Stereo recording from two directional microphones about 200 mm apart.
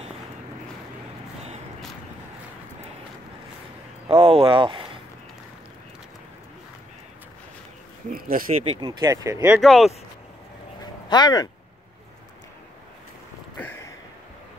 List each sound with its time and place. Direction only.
4.1 s speech: 30° right (ahead or behind)
8.1 s speech: 45° right (ahead or behind)
8.6 s speech: 20° right (ahead or behind)
9.6 s speech: centre (ahead or behind)
10.8 s a sound: 20° left (ahead or behind)
13.6 s a sound: 10° left (ahead or behind)